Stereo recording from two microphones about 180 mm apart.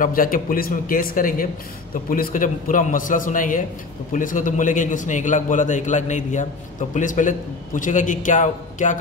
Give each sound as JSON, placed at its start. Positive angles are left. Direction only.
{"t": 0.0, "sound": "a man's voice", "side_deg": 50}